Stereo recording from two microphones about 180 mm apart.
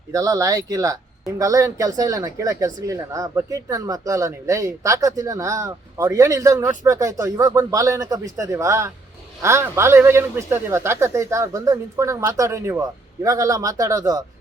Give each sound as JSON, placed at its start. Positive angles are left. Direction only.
{"t": 0.1, "sound": "speech", "side_deg": -20}